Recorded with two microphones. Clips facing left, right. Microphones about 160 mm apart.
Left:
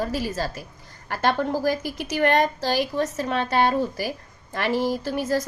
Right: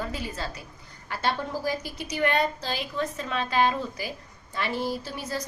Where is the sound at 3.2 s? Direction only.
60° left (ahead or behind).